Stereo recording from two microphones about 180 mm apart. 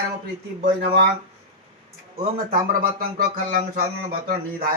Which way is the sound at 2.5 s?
55° right (ahead or behind).